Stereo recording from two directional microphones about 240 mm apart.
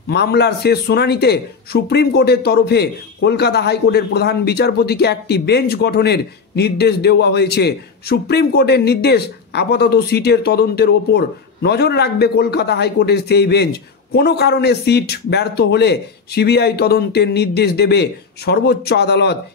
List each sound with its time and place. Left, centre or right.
0.1 s speech: left